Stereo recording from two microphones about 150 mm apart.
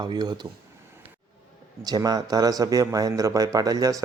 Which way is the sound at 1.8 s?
25° right (ahead or behind).